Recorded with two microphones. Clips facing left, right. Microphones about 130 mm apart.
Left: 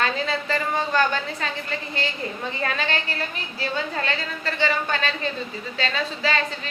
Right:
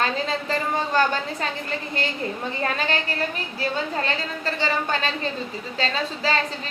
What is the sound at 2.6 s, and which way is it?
Speech, 40° right (ahead or behind).